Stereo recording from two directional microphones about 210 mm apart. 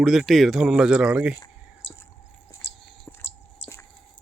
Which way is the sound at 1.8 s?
60° left (ahead or behind).